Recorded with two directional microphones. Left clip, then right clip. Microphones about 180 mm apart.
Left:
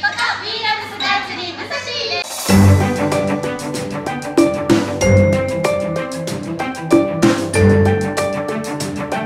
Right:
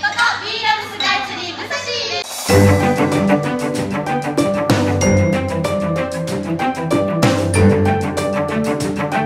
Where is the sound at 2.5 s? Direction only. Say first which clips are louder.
Right 3 dB; centre (ahead or behind).